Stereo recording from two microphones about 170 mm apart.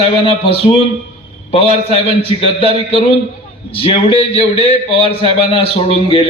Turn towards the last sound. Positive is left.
turn(degrees=35)  # may be behind; listen again after turning